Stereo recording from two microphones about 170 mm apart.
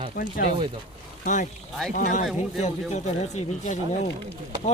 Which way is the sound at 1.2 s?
50° left (ahead or behind).